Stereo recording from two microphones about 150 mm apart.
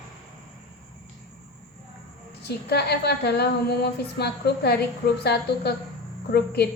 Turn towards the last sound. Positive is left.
turn(degrees=90)